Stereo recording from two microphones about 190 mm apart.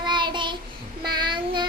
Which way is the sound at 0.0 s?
25° right (ahead or behind).